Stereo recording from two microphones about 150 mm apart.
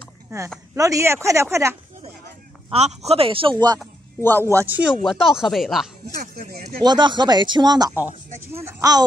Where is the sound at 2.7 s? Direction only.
45° right (ahead or behind).